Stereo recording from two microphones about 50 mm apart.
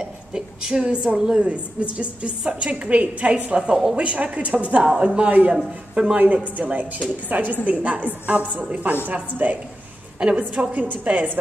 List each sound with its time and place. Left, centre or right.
0.3 s a woman's voice: centre
1.4 s a woman's voice: right
6.1 s a woman's voice: right
10.2 s a woman's voice: centre
10.5 s a woman's voice: right